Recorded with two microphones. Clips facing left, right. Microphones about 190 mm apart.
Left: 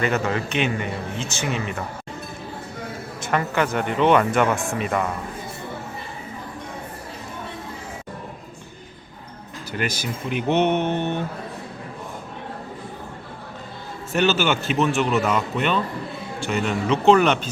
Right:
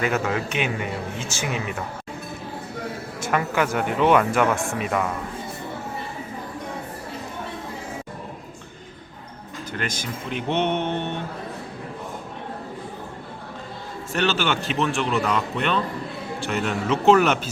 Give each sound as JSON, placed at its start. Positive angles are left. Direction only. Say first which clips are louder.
{"t": 0.0, "sound": "speech", "louder": "left 1 dB", "side_deg": -5}
{"t": 3.2, "sound": "speech", "louder": "even", "side_deg": -10}
{"t": 9.7, "sound": "speech", "louder": "left 3 dB", "side_deg": 5}
{"t": 14.1, "sound": "speech", "louder": "left 3 dB", "side_deg": 5}